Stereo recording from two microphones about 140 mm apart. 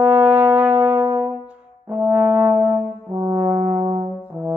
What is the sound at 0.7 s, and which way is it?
Music, 15° right (ahead or behind).